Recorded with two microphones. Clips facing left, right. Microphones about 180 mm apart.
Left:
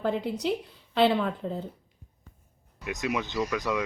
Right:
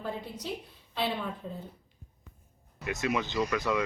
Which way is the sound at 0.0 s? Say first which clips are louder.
Left 9 dB; 75° left (ahead or behind).